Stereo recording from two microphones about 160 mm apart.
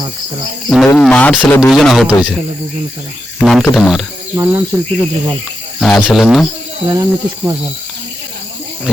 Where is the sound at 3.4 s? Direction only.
Centre (ahead or behind).